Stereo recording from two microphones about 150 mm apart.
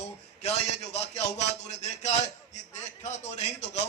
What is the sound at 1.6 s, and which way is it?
A man's voice, 50° left (ahead or behind).